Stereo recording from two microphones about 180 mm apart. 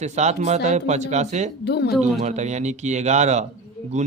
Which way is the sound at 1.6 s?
65° left (ahead or behind).